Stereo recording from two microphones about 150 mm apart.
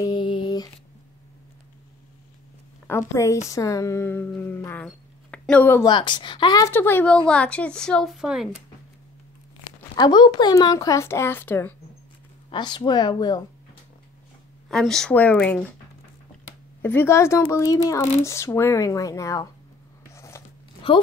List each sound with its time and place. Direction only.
0.0 s a sound: 30° left (ahead or behind)
2.9 s speech: 15° left (ahead or behind)
4.8 s a sound: 5° left (ahead or behind)
5.9 s speech: 30° left (ahead or behind)
6.7 s speech: 15° left (ahead or behind); by 8.5 s 5° right (ahead or behind)
9.9 s speech: 30° left (ahead or behind); by 11.7 s 15° left (ahead or behind)
12.4 s speech: 30° left (ahead or behind)
14.7 s speech: 5° left (ahead or behind)
16.8 s speech: 15° left (ahead or behind)
20.1 s a sound: 20° left (ahead or behind)
20.9 s speech: 35° left (ahead or behind)